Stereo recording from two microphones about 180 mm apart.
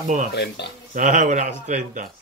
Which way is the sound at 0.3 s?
65° left (ahead or behind).